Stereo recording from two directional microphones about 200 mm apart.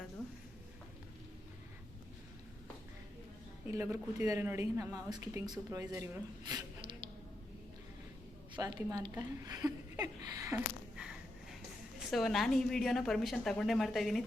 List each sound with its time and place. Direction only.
3.7 s a woman's voice: 15° right (ahead or behind)
6.5 s a sound: 20° right (ahead or behind)
8.5 s a woman's voice: 20° right (ahead or behind)
11.9 s a woman's voice: centre (ahead or behind)